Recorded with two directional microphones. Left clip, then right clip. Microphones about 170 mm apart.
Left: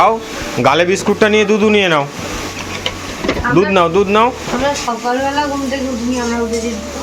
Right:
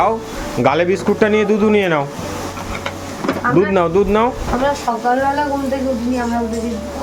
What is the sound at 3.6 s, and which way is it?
Speech, 5° right (ahead or behind).